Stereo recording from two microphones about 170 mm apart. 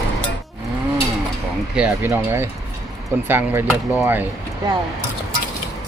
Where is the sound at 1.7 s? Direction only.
10° right (ahead or behind).